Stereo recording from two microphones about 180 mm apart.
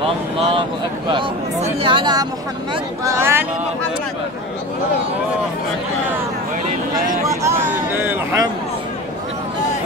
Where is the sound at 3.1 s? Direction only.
15° right (ahead or behind).